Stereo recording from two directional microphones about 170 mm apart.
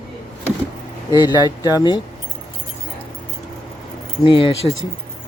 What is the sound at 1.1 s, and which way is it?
Speech, 25° left (ahead or behind).